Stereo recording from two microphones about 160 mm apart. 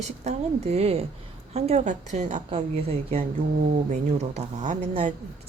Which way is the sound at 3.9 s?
45° right (ahead or behind).